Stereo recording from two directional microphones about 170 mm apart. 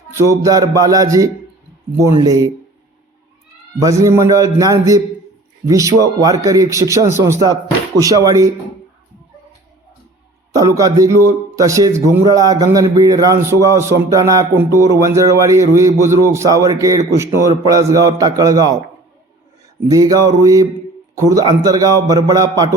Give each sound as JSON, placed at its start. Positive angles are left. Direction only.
{"t": 0.1, "sound": "a man's voice", "side_deg": -15}
{"t": 3.8, "sound": "a man's voice", "side_deg": -20}
{"t": 10.6, "sound": "a man's voice", "side_deg": -20}
{"t": 19.9, "sound": "a man's voice", "side_deg": -20}